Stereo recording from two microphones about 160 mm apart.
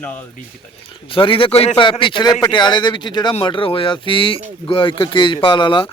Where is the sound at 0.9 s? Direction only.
35° left (ahead or behind).